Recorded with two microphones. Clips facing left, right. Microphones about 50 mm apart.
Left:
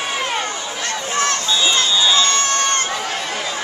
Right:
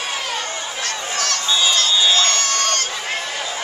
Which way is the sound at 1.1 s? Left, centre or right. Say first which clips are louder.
Left 3 dB; left.